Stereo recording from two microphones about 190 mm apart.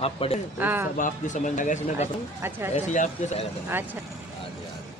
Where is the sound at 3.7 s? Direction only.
10° right (ahead or behind).